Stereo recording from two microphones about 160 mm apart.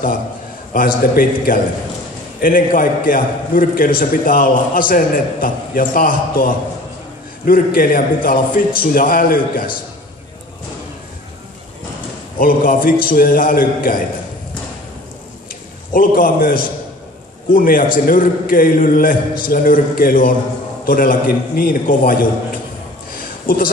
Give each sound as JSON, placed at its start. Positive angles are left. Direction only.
{"t": 0.7, "sound": "a man's voice", "side_deg": 65}
{"t": 12.4, "sound": "a man's voice", "side_deg": 60}
{"t": 15.9, "sound": "a man's voice", "side_deg": 65}
{"t": 23.4, "sound": "speech", "side_deg": 65}